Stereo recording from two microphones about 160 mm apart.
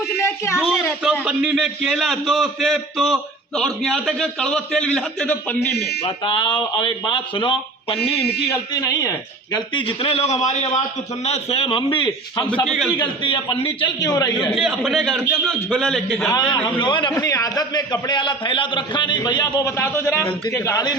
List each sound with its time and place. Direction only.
0.3 s speech: 15° left (ahead or behind)
0.7 s a man's voice: 5° right (ahead or behind)
5.7 s a man's voice: 90° left
6.1 s a man's voice: 30° left (ahead or behind)
8.2 s a man's voice: 90° left
8.4 s a man's voice: 20° left (ahead or behind)
12.6 s a man's voice: centre (ahead or behind)
13.2 s a man's voice: 30° left (ahead or behind)
14.5 s a man's voice: centre (ahead or behind)
16.3 s a man's voice: 25° left (ahead or behind)